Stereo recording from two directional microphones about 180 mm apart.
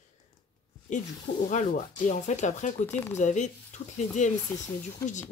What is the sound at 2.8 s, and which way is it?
Speech, 10° left (ahead or behind).